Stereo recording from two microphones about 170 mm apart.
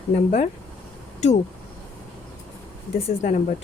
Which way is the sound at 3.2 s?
50° left (ahead or behind).